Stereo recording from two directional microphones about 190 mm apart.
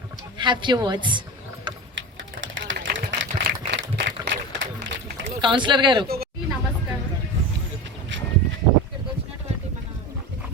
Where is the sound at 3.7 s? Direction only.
60° right (ahead or behind).